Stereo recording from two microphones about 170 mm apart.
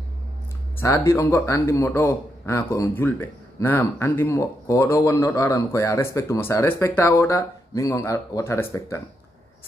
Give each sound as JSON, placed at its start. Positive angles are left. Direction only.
{"t": 0.7, "sound": "a man's voice", "side_deg": 15}